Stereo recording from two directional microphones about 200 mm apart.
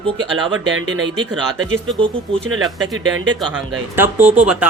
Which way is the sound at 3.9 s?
10° right (ahead or behind).